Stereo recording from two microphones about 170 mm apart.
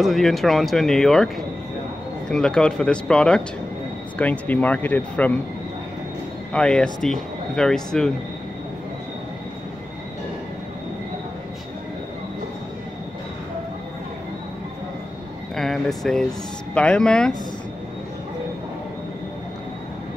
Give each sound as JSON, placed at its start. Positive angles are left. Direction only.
{"t": 0.0, "sound": "speech", "side_deg": 0}
{"t": 6.5, "sound": "speech", "side_deg": 5}
{"t": 15.5, "sound": "speech", "side_deg": 0}